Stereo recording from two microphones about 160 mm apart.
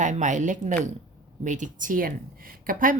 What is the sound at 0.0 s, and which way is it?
A woman's voice, 50° right (ahead or behind).